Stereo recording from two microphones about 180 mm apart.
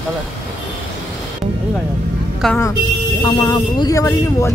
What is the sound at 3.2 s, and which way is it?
Speech, 20° left (ahead or behind).